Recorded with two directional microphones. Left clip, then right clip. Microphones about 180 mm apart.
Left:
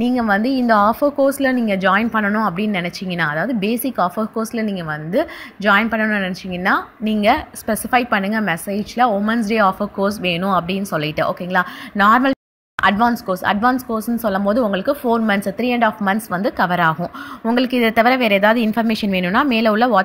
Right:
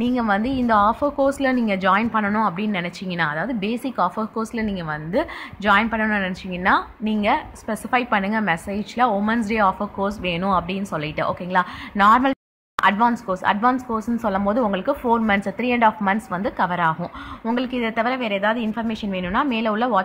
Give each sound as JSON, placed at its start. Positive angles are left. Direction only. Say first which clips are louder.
{"t": 0.0, "sound": "a woman's voice", "louder": "left 4 dB", "side_deg": 25}